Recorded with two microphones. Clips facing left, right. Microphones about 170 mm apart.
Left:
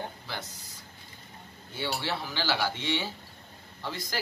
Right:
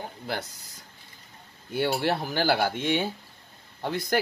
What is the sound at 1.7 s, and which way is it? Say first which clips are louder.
Speech: right 7 dB; 55° right (ahead or behind).